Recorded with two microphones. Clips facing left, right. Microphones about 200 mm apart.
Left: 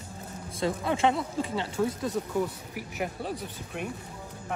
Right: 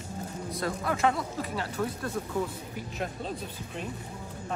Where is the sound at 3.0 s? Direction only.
10° left (ahead or behind).